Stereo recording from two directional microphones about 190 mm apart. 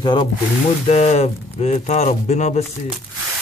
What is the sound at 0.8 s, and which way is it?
Speech, 35° left (ahead or behind).